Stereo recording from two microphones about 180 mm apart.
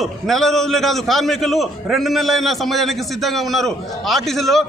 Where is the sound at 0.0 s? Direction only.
Centre (ahead or behind).